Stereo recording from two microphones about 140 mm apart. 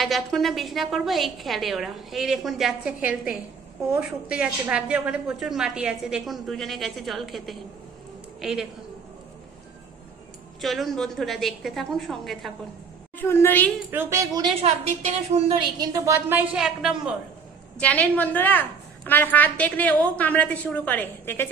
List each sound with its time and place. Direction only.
0.0 s a woman's voice: centre (ahead or behind)
4.0 s a woman's voice: 5° right (ahead or behind)
10.6 s a woman's voice: centre (ahead or behind)
13.2 s a woman's voice: 15° left (ahead or behind)
13.8 s a woman's voice: 20° right (ahead or behind)
14.6 s a woman's voice: 50° right (ahead or behind)
15.6 s a woman's voice: 30° right (ahead or behind)
16.3 s a woman's voice: 10° right (ahead or behind)
17.7 s a woman's voice: 10° left (ahead or behind)